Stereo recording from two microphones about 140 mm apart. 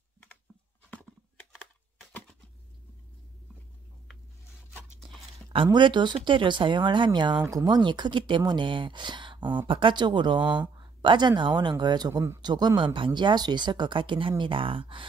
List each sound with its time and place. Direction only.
5.5 s speech: 35° right (ahead or behind)